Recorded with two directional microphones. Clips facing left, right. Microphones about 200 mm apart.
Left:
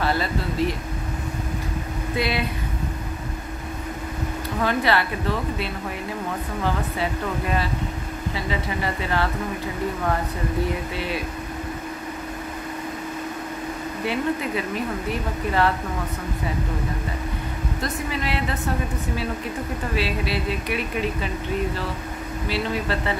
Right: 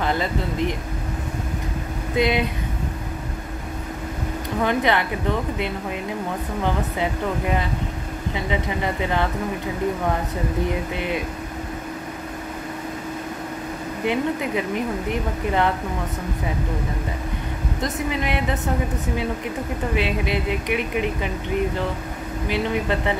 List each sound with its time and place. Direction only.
0.0 s speech: 20° right (ahead or behind)
2.1 s speech: 20° right (ahead or behind)
4.6 s speech: 20° right (ahead or behind)
6.6 s speech: 20° right (ahead or behind)
11.0 s speech: 20° right (ahead or behind)
14.0 s speech: 20° right (ahead or behind)
17.8 s speech: 20° right (ahead or behind)
20.0 s speech: 20° right (ahead or behind)
22.5 s speech: 20° right (ahead or behind)